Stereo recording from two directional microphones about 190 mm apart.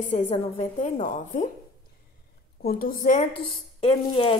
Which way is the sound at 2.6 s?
45° left (ahead or behind).